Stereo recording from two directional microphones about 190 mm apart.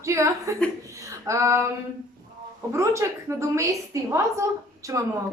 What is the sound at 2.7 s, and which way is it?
A woman's voice, 15° right (ahead or behind).